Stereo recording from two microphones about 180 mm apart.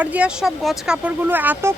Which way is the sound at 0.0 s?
5° right (ahead or behind).